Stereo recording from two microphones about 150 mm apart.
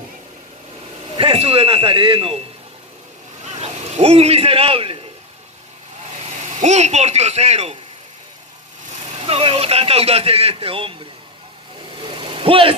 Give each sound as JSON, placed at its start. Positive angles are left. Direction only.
{"t": 1.1, "sound": "a man's voice", "side_deg": -35}
{"t": 3.4, "sound": "vehicle", "side_deg": -45}
{"t": 6.4, "sound": "speech", "side_deg": -50}
{"t": 9.2, "sound": "a man's voice", "side_deg": -35}
{"t": 12.2, "sound": "vehicle", "side_deg": -35}